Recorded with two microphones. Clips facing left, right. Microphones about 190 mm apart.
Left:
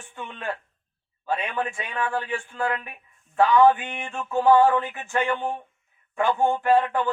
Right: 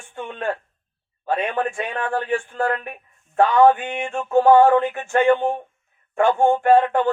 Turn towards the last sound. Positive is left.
turn(degrees=-50)  # may be behind; listen again after turning